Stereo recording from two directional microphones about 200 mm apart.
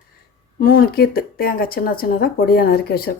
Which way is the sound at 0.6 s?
45° left (ahead or behind).